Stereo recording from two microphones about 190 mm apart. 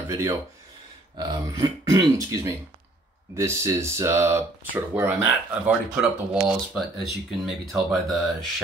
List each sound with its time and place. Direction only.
0.1 s speech: 15° right (ahead or behind); by 8.2 s centre (ahead or behind)